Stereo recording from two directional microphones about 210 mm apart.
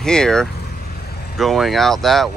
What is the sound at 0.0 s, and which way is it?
Speech, 5° left (ahead or behind).